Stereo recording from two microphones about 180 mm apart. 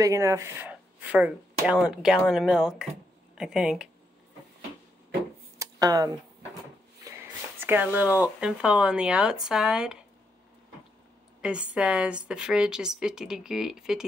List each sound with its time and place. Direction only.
0.0 s speech: 15° right (ahead or behind)
5.6 s a sound: 20° right (ahead or behind)
7.1 s speech: 10° right (ahead or behind)
11.4 s speech: 5° right (ahead or behind)